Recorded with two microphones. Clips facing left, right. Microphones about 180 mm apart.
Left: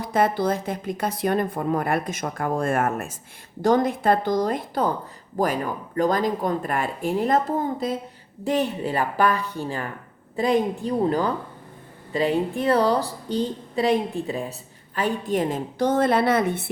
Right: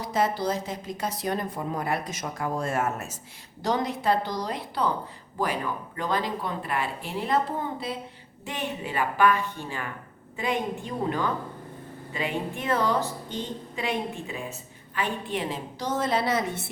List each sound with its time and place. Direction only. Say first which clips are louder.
0.0 s a woman's voice: left 4 dB; 55° left (ahead or behind)